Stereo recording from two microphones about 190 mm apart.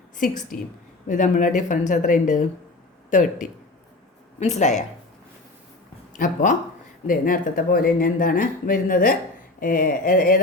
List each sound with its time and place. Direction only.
1.0 s speech: 40° left (ahead or behind)
4.4 s speech: 35° left (ahead or behind)
6.1 s speech: 45° left (ahead or behind)